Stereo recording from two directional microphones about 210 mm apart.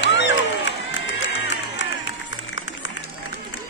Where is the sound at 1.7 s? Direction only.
60° left (ahead or behind).